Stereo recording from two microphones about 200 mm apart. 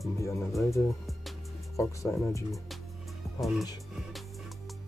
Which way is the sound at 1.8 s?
15° left (ahead or behind).